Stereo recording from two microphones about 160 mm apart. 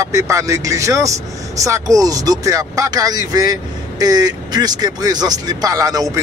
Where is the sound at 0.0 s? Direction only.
20° right (ahead or behind).